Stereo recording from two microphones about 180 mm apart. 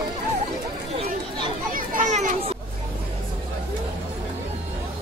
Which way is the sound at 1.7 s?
45° right (ahead or behind).